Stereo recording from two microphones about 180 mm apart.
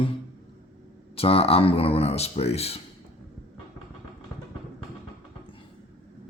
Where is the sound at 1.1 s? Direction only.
30° left (ahead or behind).